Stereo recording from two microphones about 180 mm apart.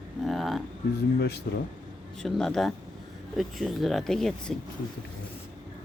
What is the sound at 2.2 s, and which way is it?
Speech, centre (ahead or behind).